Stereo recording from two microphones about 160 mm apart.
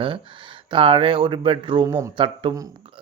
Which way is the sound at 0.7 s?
35° right (ahead or behind).